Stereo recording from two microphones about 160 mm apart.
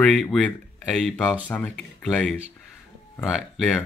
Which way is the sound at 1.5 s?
5° left (ahead or behind).